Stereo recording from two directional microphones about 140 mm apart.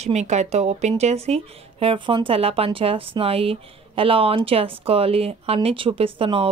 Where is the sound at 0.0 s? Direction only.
55° right (ahead or behind).